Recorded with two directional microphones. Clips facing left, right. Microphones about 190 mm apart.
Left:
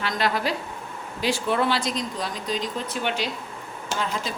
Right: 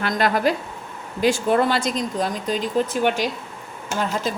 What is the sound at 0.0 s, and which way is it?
Speech, 50° right (ahead or behind).